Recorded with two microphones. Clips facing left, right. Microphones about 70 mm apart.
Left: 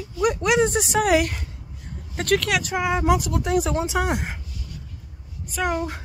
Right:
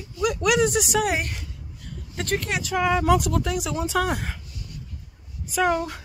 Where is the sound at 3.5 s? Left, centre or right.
Left.